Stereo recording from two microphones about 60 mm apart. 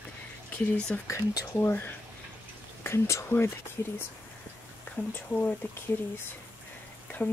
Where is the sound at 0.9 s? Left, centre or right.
Centre.